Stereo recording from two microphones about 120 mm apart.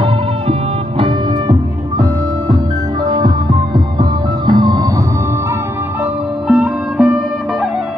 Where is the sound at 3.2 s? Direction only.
35° right (ahead or behind).